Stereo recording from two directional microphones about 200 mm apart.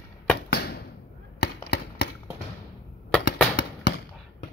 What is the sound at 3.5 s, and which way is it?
Firecracker, 55° left (ahead or behind).